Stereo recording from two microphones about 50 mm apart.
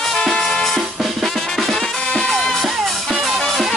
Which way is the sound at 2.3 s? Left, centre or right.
Centre.